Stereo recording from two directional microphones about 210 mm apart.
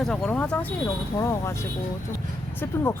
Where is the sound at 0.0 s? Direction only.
5° left (ahead or behind).